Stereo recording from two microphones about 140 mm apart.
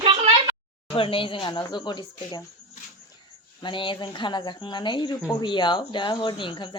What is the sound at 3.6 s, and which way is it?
A woman's voice, 35° left (ahead or behind).